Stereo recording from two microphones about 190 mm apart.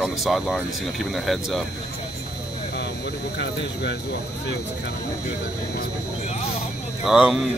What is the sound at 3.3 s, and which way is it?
Speech, 65° left (ahead or behind).